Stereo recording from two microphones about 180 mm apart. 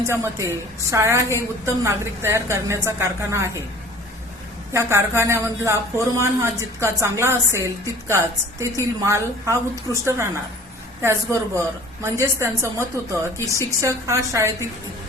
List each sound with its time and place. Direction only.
0.1 s speech: 15° right (ahead or behind)
4.7 s speech: 15° right (ahead or behind)